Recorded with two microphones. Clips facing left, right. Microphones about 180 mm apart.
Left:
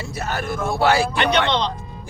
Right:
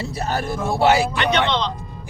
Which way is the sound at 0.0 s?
35° right (ahead or behind).